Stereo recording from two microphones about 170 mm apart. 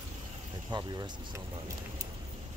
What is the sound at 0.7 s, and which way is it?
Speech, 25° right (ahead or behind).